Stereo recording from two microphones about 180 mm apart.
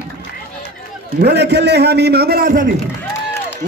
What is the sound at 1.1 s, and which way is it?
A man's voice, 65° right (ahead or behind).